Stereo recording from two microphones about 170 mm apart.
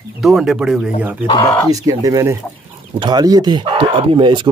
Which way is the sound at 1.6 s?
20° right (ahead or behind).